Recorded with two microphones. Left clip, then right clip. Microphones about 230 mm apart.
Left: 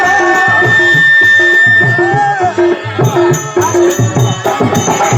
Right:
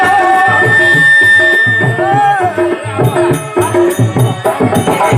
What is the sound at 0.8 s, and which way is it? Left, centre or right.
Music, right.